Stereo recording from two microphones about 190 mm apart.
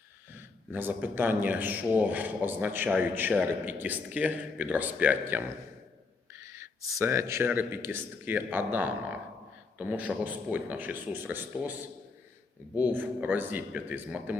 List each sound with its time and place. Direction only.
0.3 s a man's voice: 10° right (ahead or behind)
12.7 s a man's voice: 10° right (ahead or behind)